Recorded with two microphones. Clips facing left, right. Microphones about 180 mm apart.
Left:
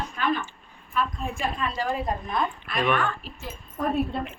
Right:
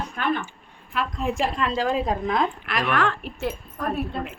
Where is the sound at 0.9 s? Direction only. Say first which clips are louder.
Right 2 dB; 85° right; by 3.5 s 70° right (ahead or behind).